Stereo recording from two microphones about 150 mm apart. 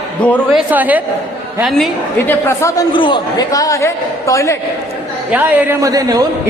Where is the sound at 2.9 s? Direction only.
30° left (ahead or behind).